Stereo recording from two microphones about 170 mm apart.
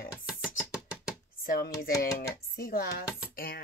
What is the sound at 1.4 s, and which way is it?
Speech, 60° left (ahead or behind).